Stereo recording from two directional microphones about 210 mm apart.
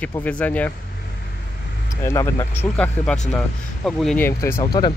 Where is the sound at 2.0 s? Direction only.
15° left (ahead or behind).